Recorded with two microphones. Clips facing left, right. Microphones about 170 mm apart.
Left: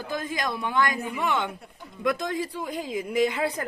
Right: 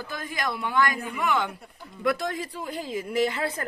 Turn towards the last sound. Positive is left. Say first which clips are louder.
# left 1 dB
turn(degrees=15)  # may be behind; listen again after turning